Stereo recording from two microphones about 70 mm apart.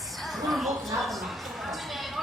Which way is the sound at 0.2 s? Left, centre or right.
Centre.